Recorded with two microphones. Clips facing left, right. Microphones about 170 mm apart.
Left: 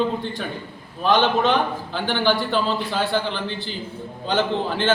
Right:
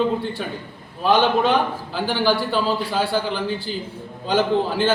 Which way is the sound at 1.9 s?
10° right (ahead or behind).